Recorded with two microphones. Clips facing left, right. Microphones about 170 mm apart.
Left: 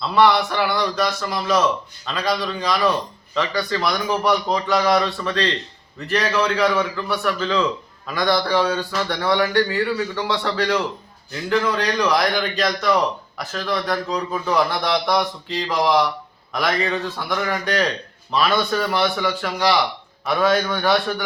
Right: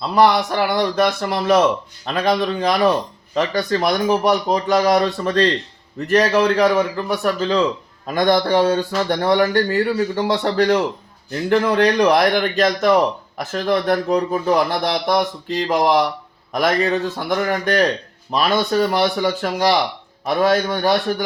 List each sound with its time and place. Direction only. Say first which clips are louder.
0.1 s a man's voice: right 2 dB; 40° right (ahead or behind)